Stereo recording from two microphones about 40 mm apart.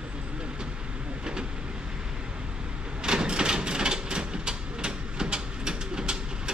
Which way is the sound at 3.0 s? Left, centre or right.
Centre.